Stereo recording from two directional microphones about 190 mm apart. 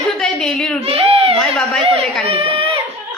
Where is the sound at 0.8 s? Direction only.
30° right (ahead or behind).